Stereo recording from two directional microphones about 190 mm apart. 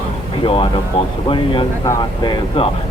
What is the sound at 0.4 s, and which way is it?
Speech, 25° left (ahead or behind).